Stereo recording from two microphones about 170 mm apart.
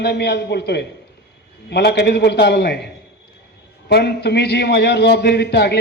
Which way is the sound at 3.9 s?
80° left.